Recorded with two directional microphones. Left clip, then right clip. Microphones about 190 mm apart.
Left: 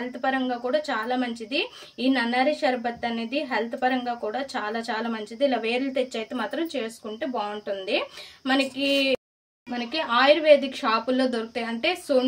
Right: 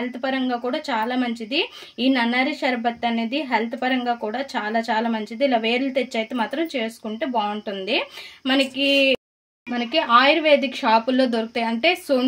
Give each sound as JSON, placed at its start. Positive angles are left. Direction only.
{"t": 0.2, "sound": "speech", "side_deg": -45}